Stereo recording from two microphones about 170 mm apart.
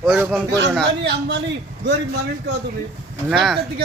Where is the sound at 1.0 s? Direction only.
80° right.